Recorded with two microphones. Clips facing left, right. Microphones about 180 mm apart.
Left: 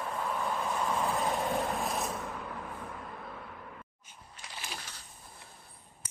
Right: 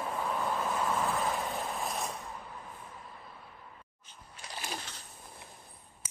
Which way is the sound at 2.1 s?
75° left (ahead or behind).